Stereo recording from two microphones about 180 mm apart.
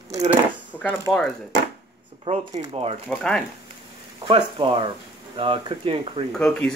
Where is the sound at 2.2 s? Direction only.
35° right (ahead or behind).